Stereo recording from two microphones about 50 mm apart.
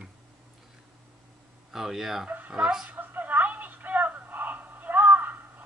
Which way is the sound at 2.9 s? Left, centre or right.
Right.